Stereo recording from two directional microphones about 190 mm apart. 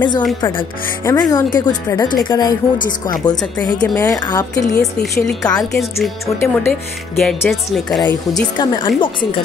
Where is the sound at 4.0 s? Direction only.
20° left (ahead or behind).